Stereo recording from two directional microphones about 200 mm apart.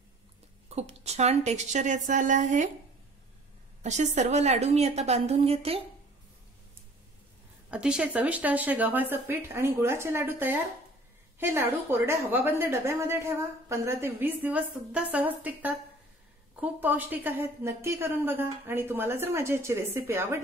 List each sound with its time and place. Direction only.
0.7 s a woman's voice: 30° right (ahead or behind)
3.8 s a woman's voice: 35° right (ahead or behind)
7.7 s a woman's voice: 5° right (ahead or behind)
16.8 s a woman's voice: 10° right (ahead or behind)